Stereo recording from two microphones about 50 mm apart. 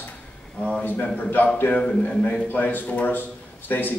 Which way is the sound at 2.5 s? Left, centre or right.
Left.